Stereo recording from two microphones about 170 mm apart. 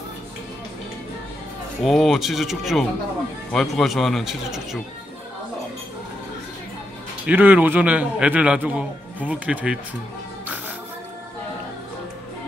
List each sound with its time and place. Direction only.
1.8 s speech: centre (ahead or behind)
7.2 s a man's voice: 10° right (ahead or behind)